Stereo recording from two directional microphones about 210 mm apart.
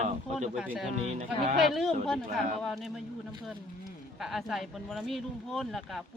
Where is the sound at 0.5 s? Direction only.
5° right (ahead or behind).